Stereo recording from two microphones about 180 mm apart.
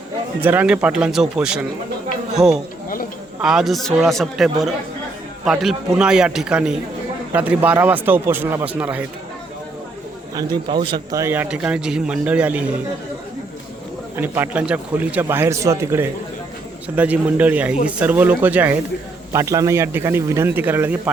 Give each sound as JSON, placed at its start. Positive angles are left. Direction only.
{"t": 0.4, "sound": "a man's voice", "side_deg": -10}
{"t": 10.3, "sound": "a man's voice", "side_deg": -25}
{"t": 14.2, "sound": "a man's voice", "side_deg": -10}